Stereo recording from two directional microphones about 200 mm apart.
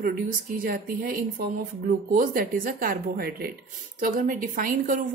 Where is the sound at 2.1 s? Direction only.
45° right (ahead or behind).